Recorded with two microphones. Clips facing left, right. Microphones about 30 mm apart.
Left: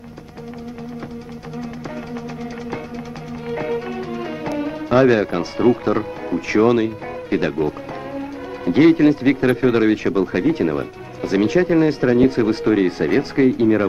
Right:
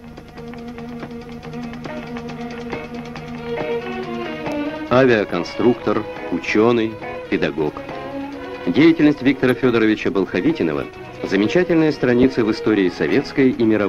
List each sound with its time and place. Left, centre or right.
3.4 s music: right
4.6 s a man's voice: right